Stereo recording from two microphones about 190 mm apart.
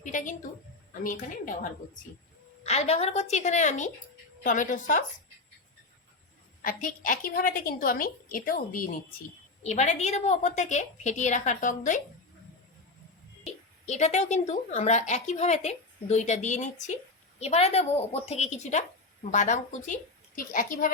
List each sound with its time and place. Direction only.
0.0 s a woman's voice: 40° left (ahead or behind)
2.6 s a woman's voice: 35° left (ahead or behind)
6.6 s a woman's voice: 45° left (ahead or behind)
9.6 s speech: 35° left (ahead or behind)
13.4 s a woman's voice: 35° left (ahead or behind)